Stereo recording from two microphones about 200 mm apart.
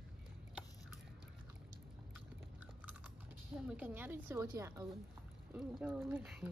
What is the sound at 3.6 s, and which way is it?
A woman's voice, 5° right (ahead or behind).